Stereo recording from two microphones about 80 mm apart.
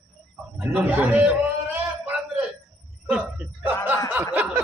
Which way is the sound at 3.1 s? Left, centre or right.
Centre.